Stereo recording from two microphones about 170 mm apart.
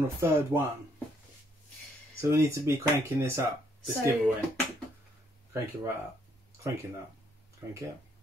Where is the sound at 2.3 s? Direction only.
15° right (ahead or behind).